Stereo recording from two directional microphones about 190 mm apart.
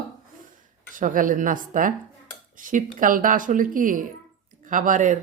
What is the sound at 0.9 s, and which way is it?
A man's voice, 45° right (ahead or behind).